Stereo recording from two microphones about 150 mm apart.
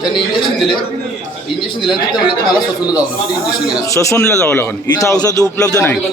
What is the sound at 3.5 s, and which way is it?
A man's voice, 25° left (ahead or behind).